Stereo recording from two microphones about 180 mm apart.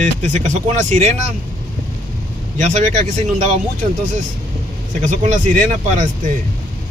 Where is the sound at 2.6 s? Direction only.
40° right (ahead or behind).